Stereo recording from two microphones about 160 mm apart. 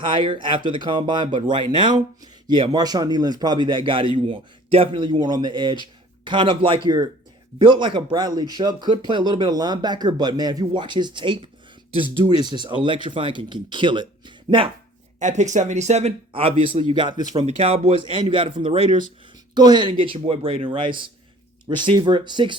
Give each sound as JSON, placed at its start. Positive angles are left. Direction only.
{"t": 0.1, "sound": "a man's voice", "side_deg": -30}
{"t": 15.2, "sound": "speech", "side_deg": -50}
{"t": 17.4, "sound": "a man's voice", "side_deg": -40}